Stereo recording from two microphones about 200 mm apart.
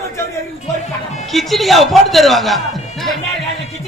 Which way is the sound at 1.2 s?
Centre (ahead or behind).